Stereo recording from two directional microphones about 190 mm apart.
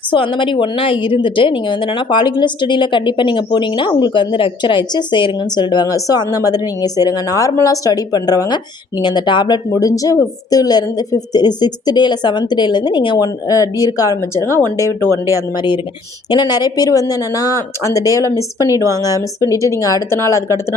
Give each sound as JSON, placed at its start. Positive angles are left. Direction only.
{"t": 0.1, "sound": "a woman's voice", "side_deg": 25}
{"t": 15.1, "sound": "speech", "side_deg": -15}
{"t": 15.5, "sound": "a woman's voice", "side_deg": 25}